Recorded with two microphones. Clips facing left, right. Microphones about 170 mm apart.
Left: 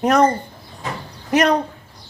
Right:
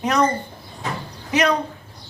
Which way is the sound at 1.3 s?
50° left (ahead or behind).